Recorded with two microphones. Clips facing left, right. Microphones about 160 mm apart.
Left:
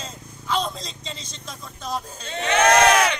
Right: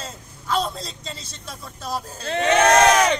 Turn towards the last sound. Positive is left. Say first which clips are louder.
# right 1 dB
turn(degrees=-35)  # may be behind; listen again after turning